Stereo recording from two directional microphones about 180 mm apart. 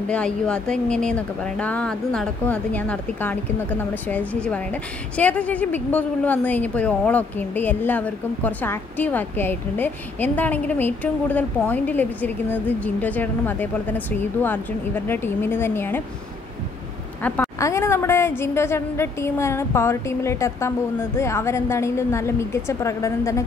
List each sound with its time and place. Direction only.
0.1 s a woman's voice: 5° left (ahead or behind)
5.1 s a woman's voice: 5° left (ahead or behind)
15.0 s a woman's voice: 10° left (ahead or behind)
17.2 s a woman's voice: 15° left (ahead or behind)